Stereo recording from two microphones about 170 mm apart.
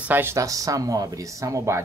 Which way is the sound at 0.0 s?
10° right (ahead or behind).